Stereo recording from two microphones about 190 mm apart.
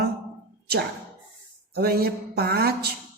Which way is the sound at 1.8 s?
55° right (ahead or behind).